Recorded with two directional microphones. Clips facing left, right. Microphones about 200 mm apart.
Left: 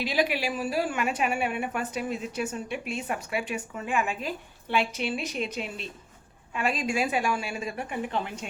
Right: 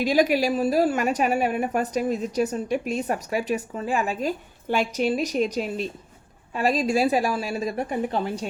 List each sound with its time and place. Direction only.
0.0 s a woman's voice: 45° right (ahead or behind)